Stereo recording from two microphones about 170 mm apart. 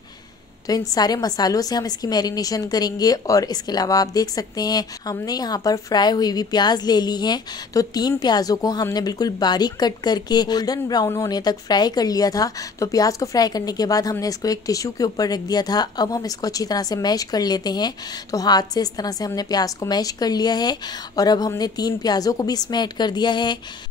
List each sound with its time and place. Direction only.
0.7 s a woman's voice: 20° left (ahead or behind)